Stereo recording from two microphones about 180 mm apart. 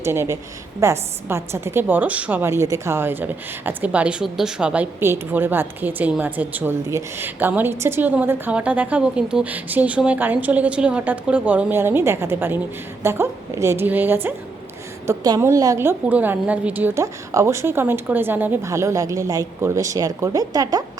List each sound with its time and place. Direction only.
0.0 s a woman's voice: 15° right (ahead or behind)